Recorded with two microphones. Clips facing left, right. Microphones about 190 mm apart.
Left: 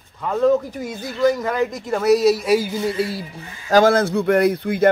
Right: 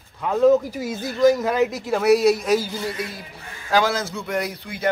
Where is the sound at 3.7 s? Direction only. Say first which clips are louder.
Left 7 dB; 50° left (ahead or behind).